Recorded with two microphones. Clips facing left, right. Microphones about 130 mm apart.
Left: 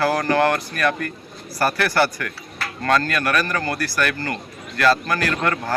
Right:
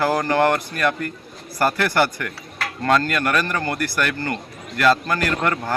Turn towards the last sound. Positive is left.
turn(degrees=-20)  # may be behind; listen again after turning